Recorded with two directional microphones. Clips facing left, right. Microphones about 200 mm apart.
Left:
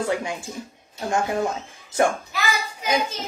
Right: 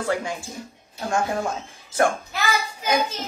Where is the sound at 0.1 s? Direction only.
20° left (ahead or behind).